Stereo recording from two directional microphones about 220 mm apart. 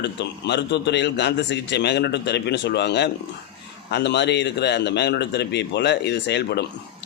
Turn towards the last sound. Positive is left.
turn(degrees=50)  # may be behind; listen again after turning